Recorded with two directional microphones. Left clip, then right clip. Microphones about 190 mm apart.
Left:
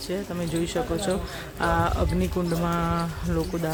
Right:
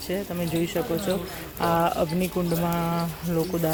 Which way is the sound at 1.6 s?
5° left (ahead or behind).